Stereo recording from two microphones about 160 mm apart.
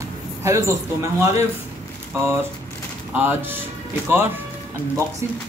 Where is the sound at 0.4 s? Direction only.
20° right (ahead or behind).